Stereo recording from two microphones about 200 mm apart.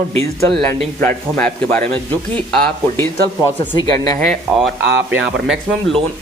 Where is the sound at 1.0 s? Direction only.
5° left (ahead or behind).